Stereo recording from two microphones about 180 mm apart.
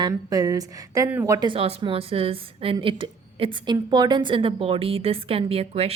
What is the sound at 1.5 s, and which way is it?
A woman's voice, 30° right (ahead or behind).